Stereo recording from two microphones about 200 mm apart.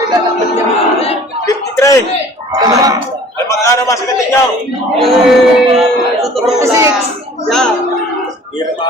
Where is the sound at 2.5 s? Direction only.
20° right (ahead or behind).